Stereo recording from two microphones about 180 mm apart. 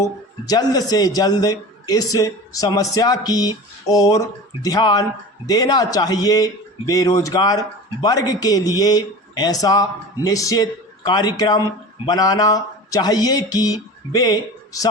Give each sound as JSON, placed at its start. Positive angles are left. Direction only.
{"t": 0.0, "sound": "a man's voice", "side_deg": 20}